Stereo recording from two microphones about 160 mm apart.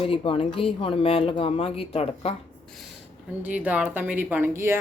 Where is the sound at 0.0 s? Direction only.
35° left (ahead or behind).